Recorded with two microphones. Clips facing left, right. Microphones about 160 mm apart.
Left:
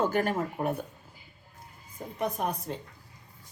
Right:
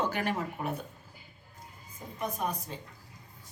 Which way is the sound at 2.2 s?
60° left (ahead or behind).